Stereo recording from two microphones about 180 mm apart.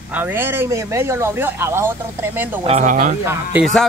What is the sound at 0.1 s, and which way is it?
Speech, 10° right (ahead or behind).